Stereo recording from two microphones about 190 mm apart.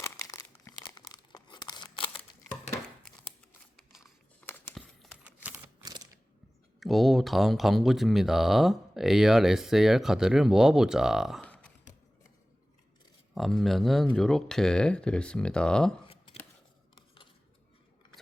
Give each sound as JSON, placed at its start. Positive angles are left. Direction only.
{"t": 0.0, "sound": "crumpling", "side_deg": 15}
{"t": 3.9, "sound": "a sound", "side_deg": 10}
{"t": 5.2, "sound": "typewriter", "side_deg": -10}
{"t": 6.7, "sound": "speech", "side_deg": 0}
{"t": 13.3, "sound": "speech", "side_deg": 0}